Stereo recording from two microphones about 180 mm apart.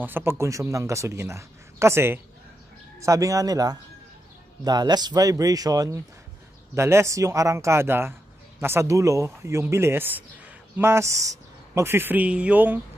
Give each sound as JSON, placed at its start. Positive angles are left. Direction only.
{"t": 0.0, "sound": "speech", "side_deg": -10}